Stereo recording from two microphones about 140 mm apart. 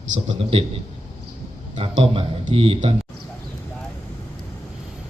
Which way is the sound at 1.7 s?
40° right (ahead or behind).